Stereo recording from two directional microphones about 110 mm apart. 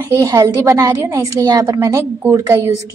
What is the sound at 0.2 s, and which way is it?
A woman's voice, 30° right (ahead or behind).